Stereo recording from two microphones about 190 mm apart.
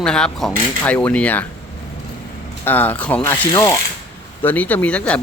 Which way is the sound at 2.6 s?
10° left (ahead or behind).